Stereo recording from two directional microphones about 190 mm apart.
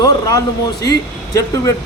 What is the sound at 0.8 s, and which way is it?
Speech, 20° left (ahead or behind).